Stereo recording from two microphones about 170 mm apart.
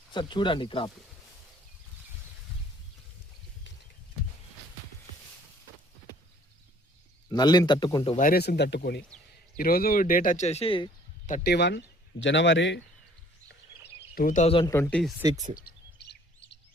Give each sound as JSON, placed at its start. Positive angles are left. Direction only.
{"t": 0.1, "sound": "a man's voice", "side_deg": 25}
{"t": 7.3, "sound": "a man's voice", "side_deg": 25}
{"t": 8.1, "sound": "speech", "side_deg": 55}
{"t": 9.0, "sound": "speech", "side_deg": 5}
{"t": 9.6, "sound": "speech", "side_deg": 60}
{"t": 11.4, "sound": "speech", "side_deg": 80}
{"t": 12.2, "sound": "speech", "side_deg": 90}
{"t": 14.2, "sound": "speech", "side_deg": 50}
{"t": 14.4, "sound": "speech", "side_deg": 30}
{"t": 14.7, "sound": "speech", "side_deg": 10}
{"t": 15.7, "sound": "chirp", "side_deg": 60}